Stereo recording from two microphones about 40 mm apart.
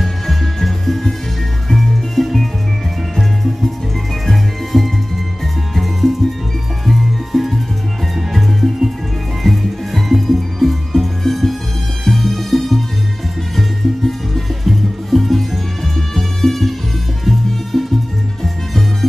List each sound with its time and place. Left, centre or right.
0.0 s music: centre